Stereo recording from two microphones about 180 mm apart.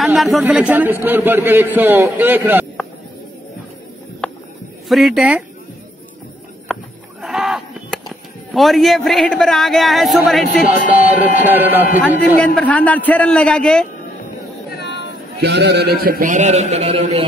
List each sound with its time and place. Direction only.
0.0 s a man's voice: centre (ahead or behind)
4.2 s a sound: 5° left (ahead or behind)
4.8 s speech: centre (ahead or behind)
6.7 s livestock: centre (ahead or behind)
10.7 s a man's voice: 10° right (ahead or behind)
12.4 s a man's voice: 10° left (ahead or behind)
14.7 s a sound: 70° left (ahead or behind)
15.4 s a man's voice: 70° right (ahead or behind); by 17.2 s 35° right (ahead or behind)